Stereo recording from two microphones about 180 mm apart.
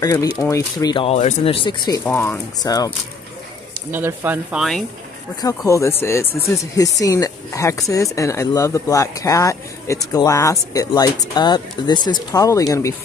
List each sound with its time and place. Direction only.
0.0 s speech: 20° left (ahead or behind)
2.0 s speech: 15° left (ahead or behind)
3.9 s speech: 10° right (ahead or behind)
5.7 s speech: 15° left (ahead or behind)